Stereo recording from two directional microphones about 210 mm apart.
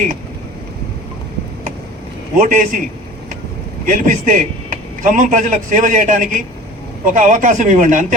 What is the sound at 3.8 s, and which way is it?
A man's voice, 40° right (ahead or behind).